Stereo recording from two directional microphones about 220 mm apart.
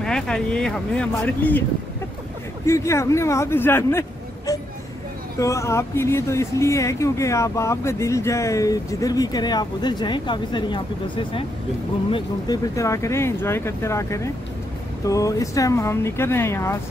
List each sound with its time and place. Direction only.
0.0 s speech: 5° left (ahead or behind)
2.6 s speech: 10° left (ahead or behind)
12.1 s speech: 15° left (ahead or behind)